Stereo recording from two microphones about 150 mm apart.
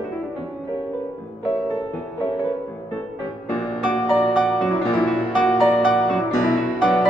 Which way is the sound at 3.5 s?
Centre (ahead or behind).